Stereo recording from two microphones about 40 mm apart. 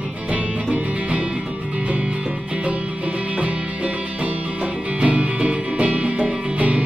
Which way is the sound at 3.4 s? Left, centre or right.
Right.